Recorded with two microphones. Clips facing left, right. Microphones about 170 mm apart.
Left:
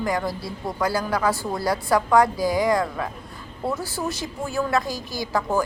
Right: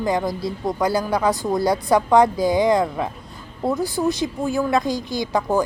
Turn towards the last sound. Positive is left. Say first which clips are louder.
# right 3 dB
turn(degrees=-15)  # may be behind; listen again after turning